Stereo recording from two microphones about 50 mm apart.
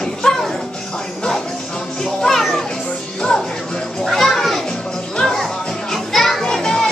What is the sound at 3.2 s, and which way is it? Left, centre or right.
Music, centre.